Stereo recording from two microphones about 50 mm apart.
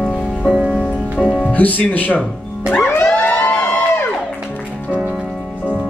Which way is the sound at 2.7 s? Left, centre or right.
Left.